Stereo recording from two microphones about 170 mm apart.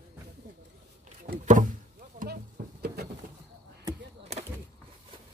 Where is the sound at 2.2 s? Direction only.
70° right (ahead or behind).